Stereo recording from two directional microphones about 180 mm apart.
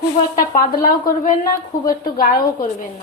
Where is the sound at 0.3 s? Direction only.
50° left (ahead or behind).